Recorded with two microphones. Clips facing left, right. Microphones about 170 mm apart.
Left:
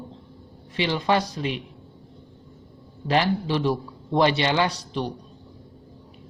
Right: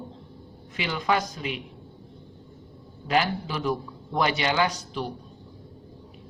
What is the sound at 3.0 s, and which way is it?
Speech, 30° left (ahead or behind).